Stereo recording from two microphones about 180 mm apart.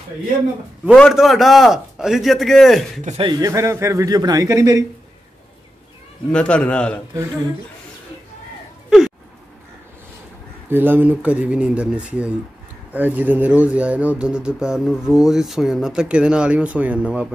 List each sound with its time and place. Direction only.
0.9 s speech: centre (ahead or behind)
3.2 s a man's voice: 25° right (ahead or behind)
6.3 s speech: 5° left (ahead or behind)
10.7 s speech: 10° right (ahead or behind)